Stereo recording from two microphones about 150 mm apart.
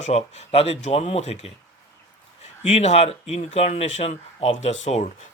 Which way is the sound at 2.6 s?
45° left (ahead or behind).